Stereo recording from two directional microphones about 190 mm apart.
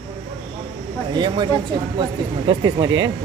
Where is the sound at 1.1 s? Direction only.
25° right (ahead or behind).